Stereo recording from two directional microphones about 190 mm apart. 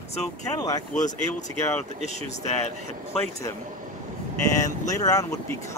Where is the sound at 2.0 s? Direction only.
35° left (ahead or behind).